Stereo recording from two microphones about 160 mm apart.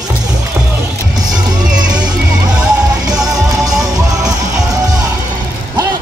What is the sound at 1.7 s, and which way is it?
Music, 25° right (ahead or behind).